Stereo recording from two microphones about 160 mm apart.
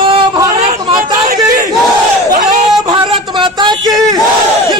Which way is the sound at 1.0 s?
60° right (ahead or behind).